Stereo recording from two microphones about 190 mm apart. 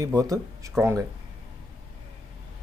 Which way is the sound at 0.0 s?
20° right (ahead or behind).